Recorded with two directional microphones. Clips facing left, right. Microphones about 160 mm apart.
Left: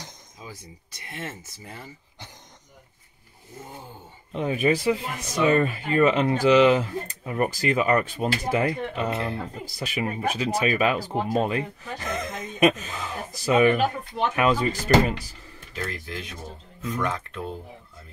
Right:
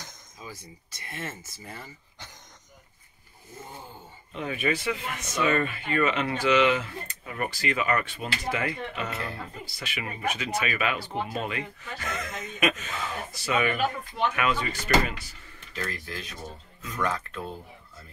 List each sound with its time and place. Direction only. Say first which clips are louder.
1.0 s speech: left 1 dB; 15° left (ahead or behind)
4.3 s speech: left 6 dB; 35° left (ahead or behind)
9.1 s speech: left 6 dB; 25° left (ahead or behind)
9.7 s speech: left 10 dB; 40° left (ahead or behind)
15.9 s speech: left 2 dB; 20° left (ahead or behind)